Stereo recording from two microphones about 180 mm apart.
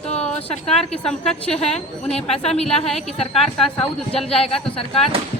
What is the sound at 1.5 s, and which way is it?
Speech, 35° left (ahead or behind).